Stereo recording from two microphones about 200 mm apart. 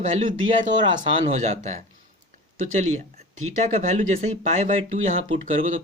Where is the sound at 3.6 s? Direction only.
40° right (ahead or behind).